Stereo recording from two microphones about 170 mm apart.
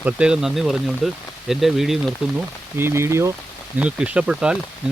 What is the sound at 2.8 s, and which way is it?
Speech, 15° right (ahead or behind).